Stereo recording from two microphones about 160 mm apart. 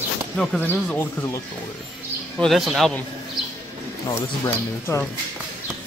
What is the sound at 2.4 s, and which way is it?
Speech, centre (ahead or behind).